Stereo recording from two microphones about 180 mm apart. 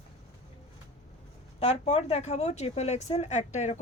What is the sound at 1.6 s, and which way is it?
A woman's voice, 40° left (ahead or behind).